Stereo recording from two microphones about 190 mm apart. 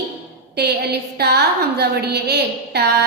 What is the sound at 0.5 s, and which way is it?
A woman's voice, 60° right (ahead or behind).